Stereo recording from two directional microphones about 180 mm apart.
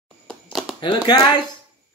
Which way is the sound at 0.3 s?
Centre (ahead or behind).